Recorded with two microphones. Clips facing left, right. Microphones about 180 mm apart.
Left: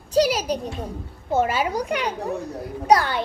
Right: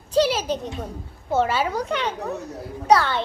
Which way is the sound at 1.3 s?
10° left (ahead or behind).